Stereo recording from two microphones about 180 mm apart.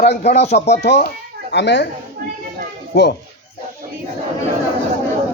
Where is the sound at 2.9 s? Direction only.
70° left (ahead or behind).